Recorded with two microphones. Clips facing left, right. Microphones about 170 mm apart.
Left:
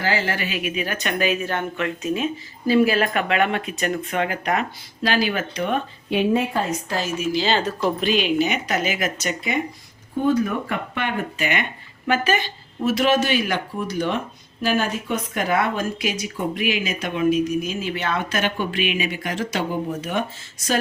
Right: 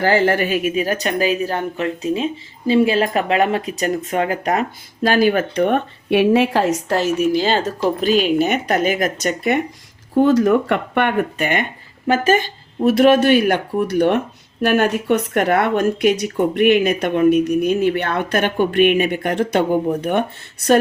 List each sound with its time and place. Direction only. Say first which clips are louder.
0.0 s speech: right 8 dB; 55° right (ahead or behind)
10.2 s speech: right 7 dB; 90° right; by 20.7 s 60° right (ahead or behind)